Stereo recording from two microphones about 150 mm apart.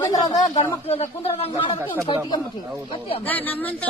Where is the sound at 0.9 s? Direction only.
40° left (ahead or behind).